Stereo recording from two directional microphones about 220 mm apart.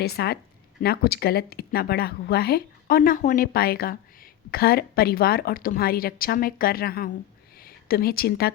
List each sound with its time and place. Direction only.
0.0 s a woman's voice: 45° left (ahead or behind)